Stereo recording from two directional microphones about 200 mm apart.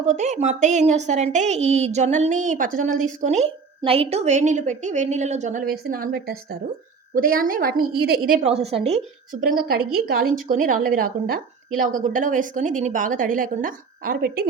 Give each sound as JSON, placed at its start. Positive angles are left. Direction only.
{"t": 0.0, "sound": "a woman's voice", "side_deg": -35}